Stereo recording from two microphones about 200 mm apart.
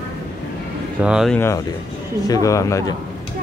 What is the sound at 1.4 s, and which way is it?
Speech, 15° left (ahead or behind).